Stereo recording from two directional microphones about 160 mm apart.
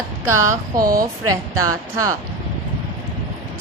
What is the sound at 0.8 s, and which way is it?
Speech, 65° right (ahead or behind).